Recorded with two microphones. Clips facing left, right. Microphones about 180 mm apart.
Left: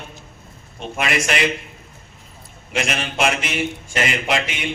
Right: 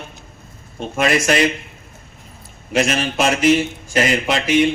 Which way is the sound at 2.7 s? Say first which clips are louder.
Right 6 dB; 40° right (ahead or behind).